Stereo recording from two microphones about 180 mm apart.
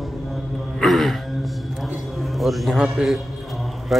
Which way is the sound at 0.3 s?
Centre (ahead or behind).